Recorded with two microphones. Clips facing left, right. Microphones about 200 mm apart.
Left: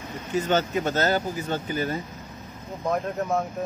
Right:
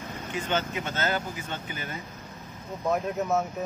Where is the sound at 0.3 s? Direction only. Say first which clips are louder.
Left 6 dB; 40° left (ahead or behind).